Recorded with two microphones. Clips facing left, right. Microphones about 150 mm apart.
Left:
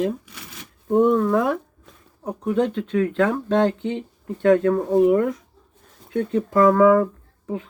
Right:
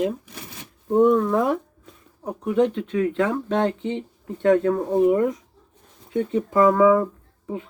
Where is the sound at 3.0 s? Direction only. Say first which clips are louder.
Left 2 dB; 20° right (ahead or behind).